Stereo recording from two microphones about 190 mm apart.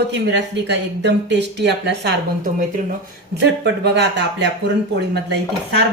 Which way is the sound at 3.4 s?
65° right (ahead or behind).